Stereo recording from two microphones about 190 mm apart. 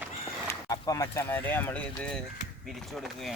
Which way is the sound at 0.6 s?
20° left (ahead or behind).